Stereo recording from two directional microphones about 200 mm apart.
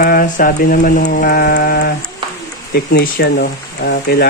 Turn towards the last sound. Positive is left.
turn(degrees=55)  # may be behind; listen again after turning